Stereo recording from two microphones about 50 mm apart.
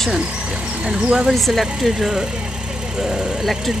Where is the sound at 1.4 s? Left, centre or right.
Centre.